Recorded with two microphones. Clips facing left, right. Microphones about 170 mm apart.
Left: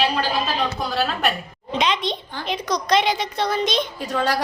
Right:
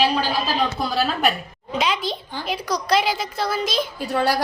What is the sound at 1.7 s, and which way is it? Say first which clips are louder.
A woman's voice: left 1 dB; 5° right (ahead or behind).